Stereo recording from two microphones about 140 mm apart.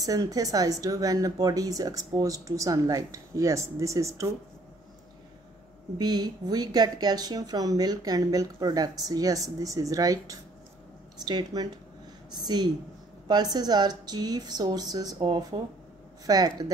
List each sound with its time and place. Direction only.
0.0 s speech: 25° right (ahead or behind)
5.9 s speech: 30° right (ahead or behind)